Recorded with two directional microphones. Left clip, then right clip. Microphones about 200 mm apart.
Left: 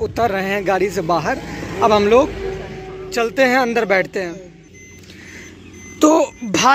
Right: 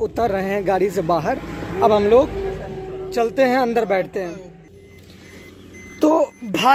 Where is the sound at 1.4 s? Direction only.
45° left (ahead or behind).